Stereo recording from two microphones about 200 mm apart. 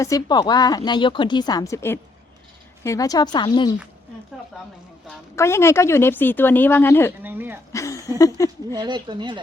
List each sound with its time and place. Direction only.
0.0 s a woman's voice: 20° left (ahead or behind)
5.4 s speech: 15° left (ahead or behind)
7.2 s speech: 10° right (ahead or behind)
7.7 s a sound: 15° left (ahead or behind)
8.4 s speech: 15° left (ahead or behind)
8.7 s speech: 20° right (ahead or behind)